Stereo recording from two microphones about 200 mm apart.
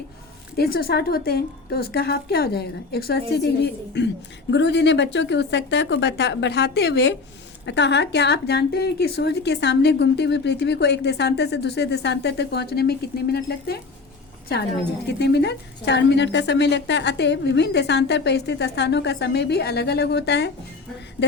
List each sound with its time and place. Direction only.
0.5 s a woman's voice: 50° left (ahead or behind)
15.2 s a woman's voice: 55° left (ahead or behind)